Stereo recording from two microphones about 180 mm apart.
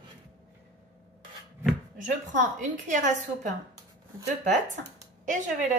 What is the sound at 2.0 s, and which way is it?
A woman's voice, 45° right (ahead or behind).